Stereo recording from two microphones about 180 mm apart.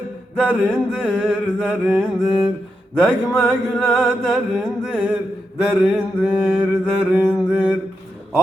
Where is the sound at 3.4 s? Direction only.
5° left (ahead or behind).